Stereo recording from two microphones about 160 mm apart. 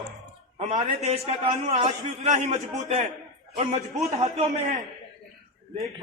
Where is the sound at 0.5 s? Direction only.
40° right (ahead or behind).